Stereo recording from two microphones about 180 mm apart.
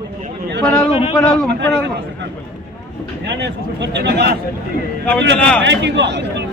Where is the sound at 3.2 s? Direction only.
75° right (ahead or behind).